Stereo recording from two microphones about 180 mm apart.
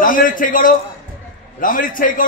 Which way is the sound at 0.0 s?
50° left (ahead or behind).